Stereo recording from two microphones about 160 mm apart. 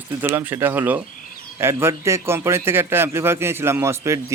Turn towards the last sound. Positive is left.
turn(degrees=-15)  # may be behind; listen again after turning